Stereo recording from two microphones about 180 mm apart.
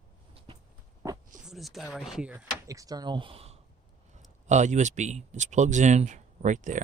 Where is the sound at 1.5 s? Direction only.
Centre (ahead or behind).